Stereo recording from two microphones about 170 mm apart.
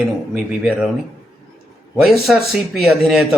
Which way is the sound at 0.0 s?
5° right (ahead or behind).